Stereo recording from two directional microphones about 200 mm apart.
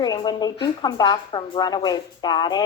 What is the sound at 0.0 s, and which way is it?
Speech, 20° left (ahead or behind).